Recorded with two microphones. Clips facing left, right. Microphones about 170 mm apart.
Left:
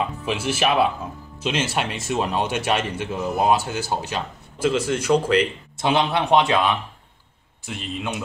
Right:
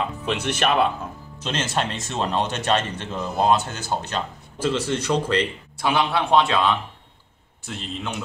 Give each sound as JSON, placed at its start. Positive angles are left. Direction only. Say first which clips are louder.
{"t": 0.2, "sound": "speech", "louder": "even", "side_deg": 5}
{"t": 5.8, "sound": "a man's voice", "louder": "left 1 dB", "side_deg": 20}